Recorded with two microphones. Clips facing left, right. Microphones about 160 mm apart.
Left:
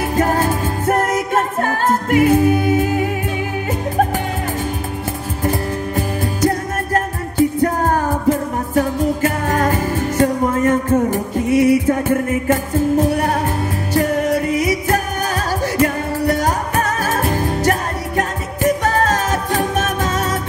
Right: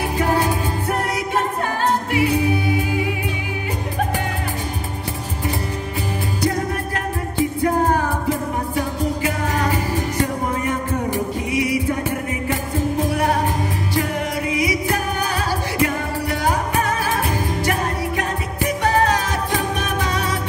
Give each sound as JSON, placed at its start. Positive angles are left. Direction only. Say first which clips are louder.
{"t": 0.1, "sound": "music", "louder": "left 3 dB", "side_deg": 45}
{"t": 5.4, "sound": "music", "louder": "left 6 dB", "side_deg": 45}